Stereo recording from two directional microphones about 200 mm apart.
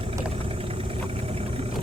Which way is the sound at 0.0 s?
30° right (ahead or behind).